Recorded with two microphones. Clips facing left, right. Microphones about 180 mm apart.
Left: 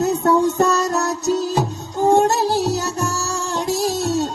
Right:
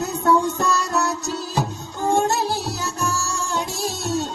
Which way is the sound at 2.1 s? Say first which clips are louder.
Left 2 dB; 40° left (ahead or behind).